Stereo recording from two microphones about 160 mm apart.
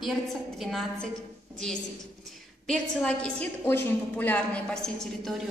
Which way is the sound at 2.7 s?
5° left (ahead or behind).